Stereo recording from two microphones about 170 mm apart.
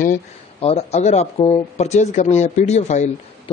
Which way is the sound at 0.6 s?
35° left (ahead or behind).